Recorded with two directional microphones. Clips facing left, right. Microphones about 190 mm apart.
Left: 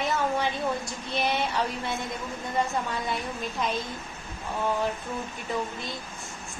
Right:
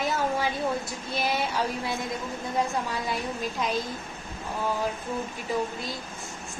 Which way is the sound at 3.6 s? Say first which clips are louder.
Even; centre (ahead or behind).